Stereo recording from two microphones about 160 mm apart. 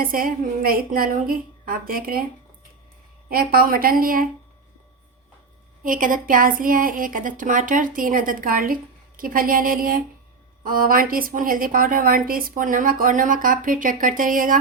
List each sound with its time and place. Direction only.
0.0 s a woman's voice: 60° right (ahead or behind)
3.2 s a woman's voice: 70° right (ahead or behind)
5.8 s a woman's voice: 60° right (ahead or behind)